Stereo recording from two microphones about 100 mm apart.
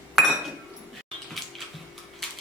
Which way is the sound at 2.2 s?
5° left (ahead or behind).